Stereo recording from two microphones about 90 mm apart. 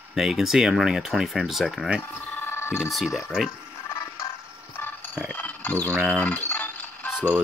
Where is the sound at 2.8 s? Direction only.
Centre (ahead or behind).